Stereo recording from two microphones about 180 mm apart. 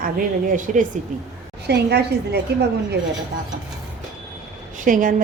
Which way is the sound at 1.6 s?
65° right (ahead or behind).